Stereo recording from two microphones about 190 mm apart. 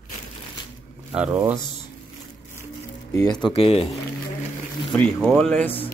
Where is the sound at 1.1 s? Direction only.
5° right (ahead or behind).